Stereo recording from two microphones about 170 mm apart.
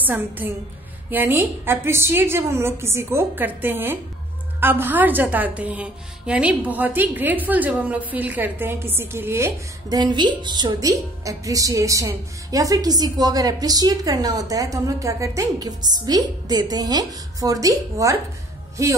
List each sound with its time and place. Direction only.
0.0 s a woman's voice: 10° right (ahead or behind)